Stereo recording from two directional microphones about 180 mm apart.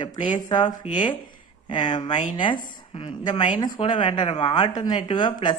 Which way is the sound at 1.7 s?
25° left (ahead or behind).